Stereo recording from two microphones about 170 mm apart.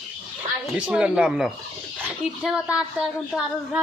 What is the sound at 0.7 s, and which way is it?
Speech, 5° right (ahead or behind).